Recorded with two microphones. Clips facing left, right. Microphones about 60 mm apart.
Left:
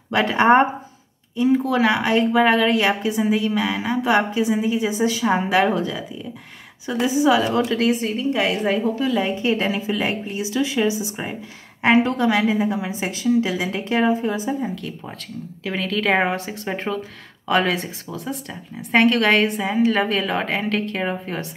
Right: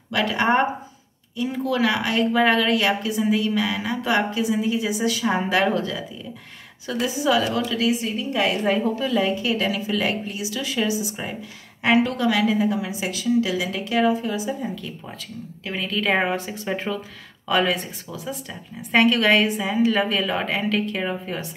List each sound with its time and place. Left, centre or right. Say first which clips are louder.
0.1 s a woman's voice: left 5 dB; left
5.2 s a woman's voice: left 3 dB; centre
7.6 s a woman's voice: left 3 dB; left
8.5 s a woman's voice: left 1 dB; centre
9.2 s a woman's voice: left 1 dB; left
15.6 s a woman's voice: left 3 dB; left
16.7 s a woman's voice: left 1 dB; left
17.6 s a woman's voice: left 1 dB; left
19.7 s a woman's voice: left 1 dB; left